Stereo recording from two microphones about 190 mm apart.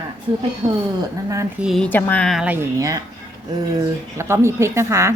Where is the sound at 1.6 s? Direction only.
Centre (ahead or behind).